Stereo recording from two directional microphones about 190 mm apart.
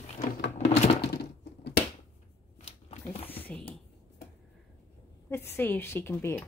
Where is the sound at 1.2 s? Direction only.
60° left (ahead or behind).